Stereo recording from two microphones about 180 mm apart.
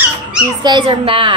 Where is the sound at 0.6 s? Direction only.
25° right (ahead or behind).